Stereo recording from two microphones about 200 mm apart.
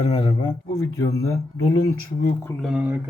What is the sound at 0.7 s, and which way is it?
Speech, 90° left.